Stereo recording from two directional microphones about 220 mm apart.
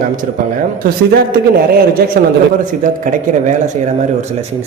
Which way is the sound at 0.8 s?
45° right (ahead or behind).